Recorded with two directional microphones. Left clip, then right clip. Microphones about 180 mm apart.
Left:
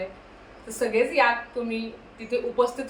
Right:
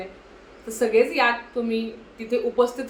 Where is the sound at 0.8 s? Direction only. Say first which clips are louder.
Right 2 dB; 15° right (ahead or behind).